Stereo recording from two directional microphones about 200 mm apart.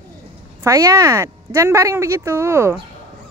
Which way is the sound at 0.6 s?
15° right (ahead or behind).